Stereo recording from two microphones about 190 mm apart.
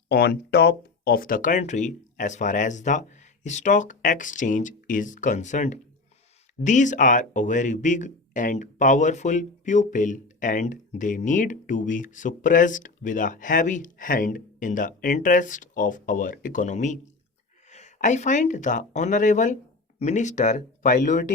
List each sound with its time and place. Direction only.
0.1 s speech: 55° left (ahead or behind); by 21.3 s 40° left (ahead or behind)